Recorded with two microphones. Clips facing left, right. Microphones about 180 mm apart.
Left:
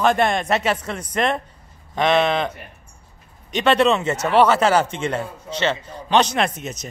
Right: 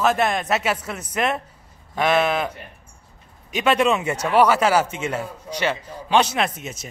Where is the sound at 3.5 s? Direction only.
10° right (ahead or behind).